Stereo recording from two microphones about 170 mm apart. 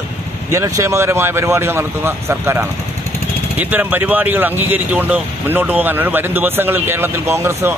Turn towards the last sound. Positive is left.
turn(degrees=-15)  # may be behind; listen again after turning